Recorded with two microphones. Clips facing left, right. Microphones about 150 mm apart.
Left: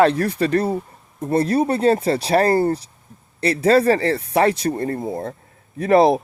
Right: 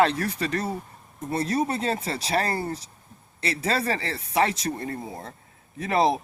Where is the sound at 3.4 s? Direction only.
40° left (ahead or behind).